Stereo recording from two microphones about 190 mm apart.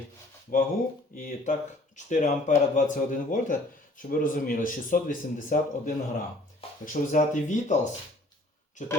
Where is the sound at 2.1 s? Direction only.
40° left (ahead or behind).